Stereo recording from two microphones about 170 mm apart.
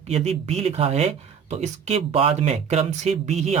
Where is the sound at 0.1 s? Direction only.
40° right (ahead or behind).